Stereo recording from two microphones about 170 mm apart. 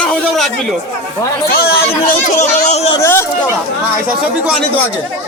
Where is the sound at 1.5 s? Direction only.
65° left (ahead or behind).